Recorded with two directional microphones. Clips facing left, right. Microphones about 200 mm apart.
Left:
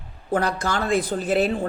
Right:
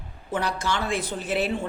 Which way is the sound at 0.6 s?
45° left (ahead or behind).